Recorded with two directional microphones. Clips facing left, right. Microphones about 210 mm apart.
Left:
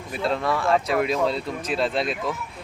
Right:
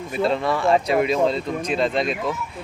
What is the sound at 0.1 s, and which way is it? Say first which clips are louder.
Speech: right 3 dB; centre (ahead or behind).